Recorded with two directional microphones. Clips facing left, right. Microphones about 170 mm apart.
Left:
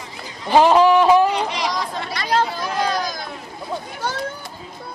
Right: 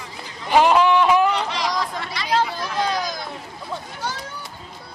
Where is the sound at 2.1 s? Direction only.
45° left (ahead or behind).